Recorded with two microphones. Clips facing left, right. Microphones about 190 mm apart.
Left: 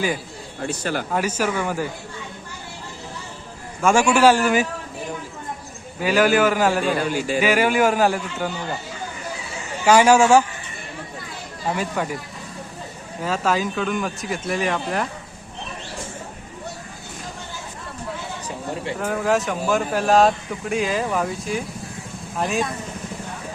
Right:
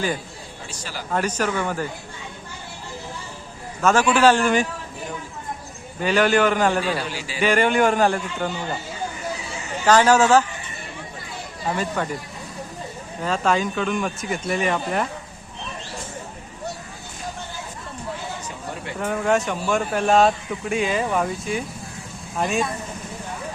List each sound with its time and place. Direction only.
0.6 s speech: 60° left (ahead or behind)
1.1 s a man's voice: 10° left (ahead or behind)
3.8 s a man's voice: 10° left (ahead or behind)
6.0 s speech: 5° left (ahead or behind)
7.0 s speech: 50° left (ahead or behind)
7.4 s speech: 5° left (ahead or behind)
9.8 s a man's voice: 10° left (ahead or behind)
12.0 s a man's voice: 10° left (ahead or behind)
13.2 s speech: 5° left (ahead or behind)
18.9 s speech: centre (ahead or behind)